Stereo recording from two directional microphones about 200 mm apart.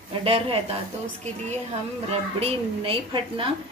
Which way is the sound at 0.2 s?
30° right (ahead or behind).